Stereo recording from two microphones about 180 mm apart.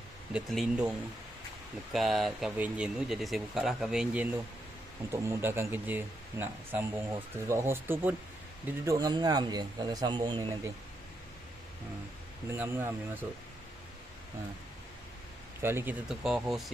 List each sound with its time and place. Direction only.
0.3 s speech: 5° right (ahead or behind); by 10.7 s 25° right (ahead or behind)
12.5 s speech: 15° right (ahead or behind)
15.6 s speech: 10° right (ahead or behind)